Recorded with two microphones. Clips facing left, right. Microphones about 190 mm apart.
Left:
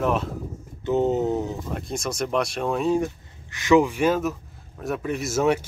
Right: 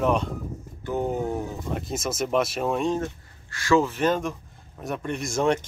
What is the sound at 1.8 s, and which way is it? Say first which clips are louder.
Speech: right 1 dB; centre (ahead or behind).